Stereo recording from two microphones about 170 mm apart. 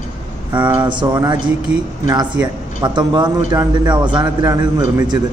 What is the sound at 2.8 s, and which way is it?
A man's voice, 25° right (ahead or behind).